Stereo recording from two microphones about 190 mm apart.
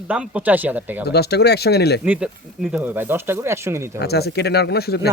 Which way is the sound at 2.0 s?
10° right (ahead or behind).